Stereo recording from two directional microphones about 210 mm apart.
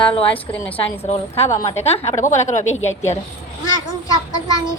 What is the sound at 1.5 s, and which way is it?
Speech, 15° left (ahead or behind).